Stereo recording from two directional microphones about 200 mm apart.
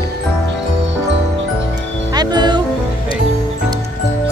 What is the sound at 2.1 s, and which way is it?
Music, 20° right (ahead or behind).